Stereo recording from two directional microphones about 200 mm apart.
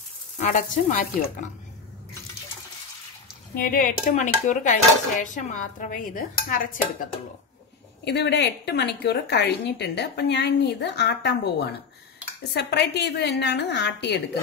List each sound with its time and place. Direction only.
0.4 s dishes: 40° left (ahead or behind)
3.5 s speech: 45° left (ahead or behind)
5.2 s dishes: 40° left (ahead or behind)
8.0 s a woman's voice: 60° left (ahead or behind)